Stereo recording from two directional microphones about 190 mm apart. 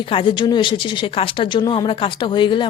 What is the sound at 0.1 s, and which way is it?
Speech, 30° left (ahead or behind).